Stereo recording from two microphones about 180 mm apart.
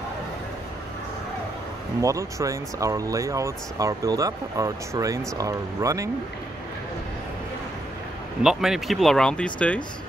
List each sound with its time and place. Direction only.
2.0 s speech: 15° right (ahead or behind)
8.4 s speech: 5° right (ahead or behind)